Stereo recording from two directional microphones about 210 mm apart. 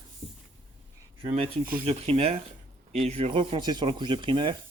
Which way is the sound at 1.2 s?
25° right (ahead or behind).